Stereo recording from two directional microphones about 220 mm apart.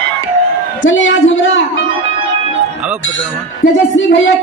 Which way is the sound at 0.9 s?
60° left (ahead or behind).